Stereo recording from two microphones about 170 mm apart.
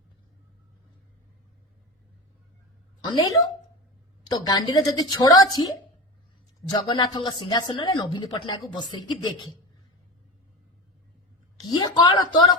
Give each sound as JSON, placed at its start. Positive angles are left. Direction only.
{"t": 3.0, "sound": "a woman's voice", "side_deg": 25}
{"t": 11.5, "sound": "speech", "side_deg": 25}